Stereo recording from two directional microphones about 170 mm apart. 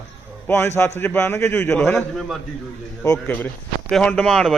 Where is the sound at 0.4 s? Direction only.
15° left (ahead or behind).